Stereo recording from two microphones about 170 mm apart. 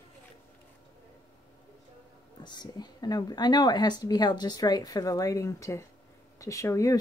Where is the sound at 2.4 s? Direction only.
25° left (ahead or behind).